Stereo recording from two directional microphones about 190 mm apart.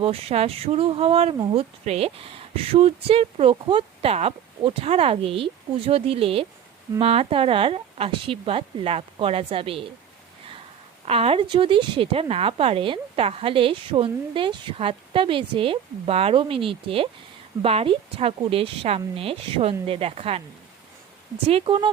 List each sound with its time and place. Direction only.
0.0 s a woman's voice: 30° right (ahead or behind)
11.0 s a woman's voice: 30° right (ahead or behind)
21.4 s a woman's voice: 30° right (ahead or behind)